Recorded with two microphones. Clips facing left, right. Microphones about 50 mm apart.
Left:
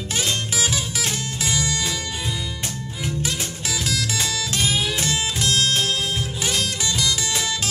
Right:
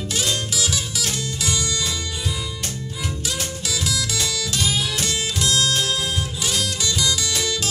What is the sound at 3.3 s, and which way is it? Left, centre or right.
Music, left.